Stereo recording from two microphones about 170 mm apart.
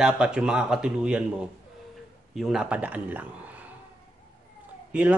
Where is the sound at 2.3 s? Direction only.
5° right (ahead or behind).